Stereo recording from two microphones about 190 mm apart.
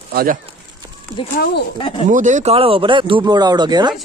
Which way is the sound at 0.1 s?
50° right (ahead or behind).